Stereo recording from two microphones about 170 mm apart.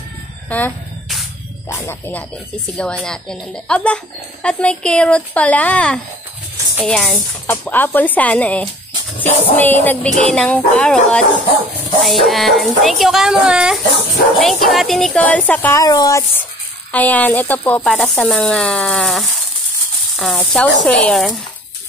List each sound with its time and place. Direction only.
0.5 s a woman's voice: 10° left (ahead or behind)
9.2 s music: 10° left (ahead or behind)
10.2 s speech: 5° left (ahead or behind)
15.8 s speech: 20° left (ahead or behind); by 21.4 s centre (ahead or behind)